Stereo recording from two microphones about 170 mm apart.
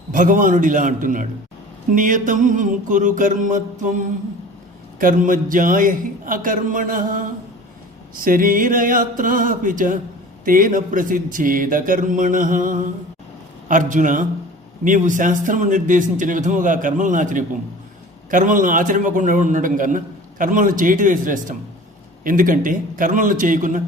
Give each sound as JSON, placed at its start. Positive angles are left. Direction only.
{"t": 0.1, "sound": "a man's voice", "side_deg": -50}